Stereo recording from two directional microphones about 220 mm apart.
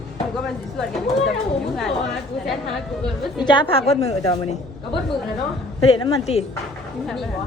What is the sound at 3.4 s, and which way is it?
A woman's voice, 20° left (ahead or behind).